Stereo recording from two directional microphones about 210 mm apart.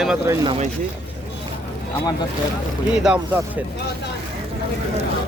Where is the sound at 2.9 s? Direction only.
5° right (ahead or behind).